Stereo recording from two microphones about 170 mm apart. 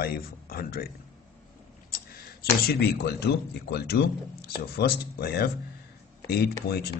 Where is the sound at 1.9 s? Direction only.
60° left (ahead or behind).